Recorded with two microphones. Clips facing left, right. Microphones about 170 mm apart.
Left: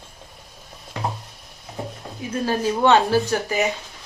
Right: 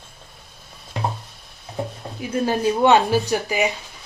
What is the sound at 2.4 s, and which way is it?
Speech, 20° right (ahead or behind).